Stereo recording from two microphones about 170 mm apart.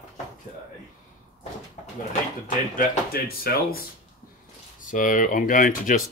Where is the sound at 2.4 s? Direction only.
50° left (ahead or behind).